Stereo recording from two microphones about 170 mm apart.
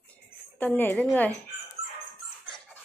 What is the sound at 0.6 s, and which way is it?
Speech, 10° left (ahead or behind).